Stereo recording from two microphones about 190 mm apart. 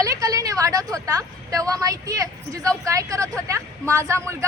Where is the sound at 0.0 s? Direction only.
20° right (ahead or behind).